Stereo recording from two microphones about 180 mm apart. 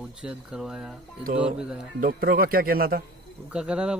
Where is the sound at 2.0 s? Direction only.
55° right (ahead or behind).